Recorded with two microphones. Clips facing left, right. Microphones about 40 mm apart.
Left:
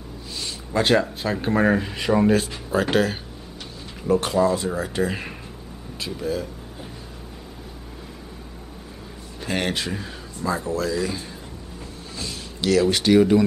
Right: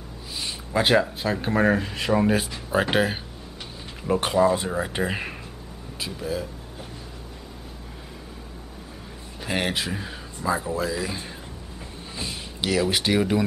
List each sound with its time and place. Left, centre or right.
0.4 s speech: centre
2.7 s speech: centre
5.9 s speech: centre
9.4 s speech: centre
12.2 s a sound: centre
12.8 s speech: centre